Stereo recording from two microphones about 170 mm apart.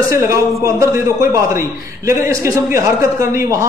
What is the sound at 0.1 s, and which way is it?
A man's voice, 15° right (ahead or behind).